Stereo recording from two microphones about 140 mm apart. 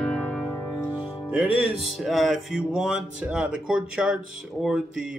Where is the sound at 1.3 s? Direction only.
5° right (ahead or behind).